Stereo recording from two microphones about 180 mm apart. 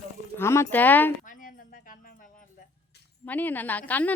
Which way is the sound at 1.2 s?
50° left (ahead or behind).